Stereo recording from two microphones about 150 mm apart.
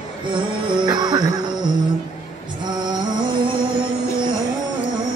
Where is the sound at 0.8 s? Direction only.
30° right (ahead or behind).